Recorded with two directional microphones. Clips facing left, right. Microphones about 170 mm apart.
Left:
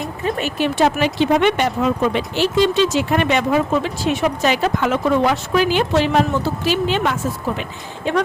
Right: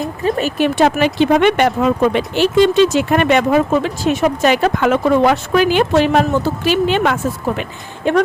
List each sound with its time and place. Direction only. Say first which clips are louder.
0.3 s speech: right 4 dB; 40° right (ahead or behind)
0.8 s speech: right 3 dB; 60° right (ahead or behind)